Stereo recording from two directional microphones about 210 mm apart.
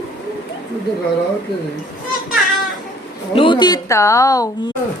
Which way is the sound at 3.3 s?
25° left (ahead or behind).